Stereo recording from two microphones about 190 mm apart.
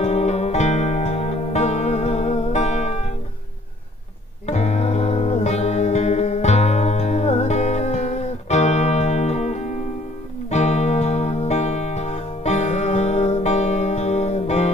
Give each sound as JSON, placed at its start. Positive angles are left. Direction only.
{"t": 0.0, "sound": "music", "side_deg": 35}
{"t": 4.5, "sound": "music", "side_deg": 35}